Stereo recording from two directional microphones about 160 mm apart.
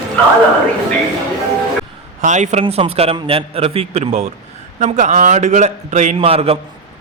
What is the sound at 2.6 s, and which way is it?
A man's voice, 35° right (ahead or behind).